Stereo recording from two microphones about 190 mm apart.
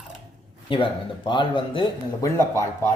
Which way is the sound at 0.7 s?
25° left (ahead or behind).